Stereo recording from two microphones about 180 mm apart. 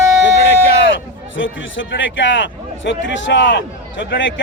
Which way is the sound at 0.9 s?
90° left.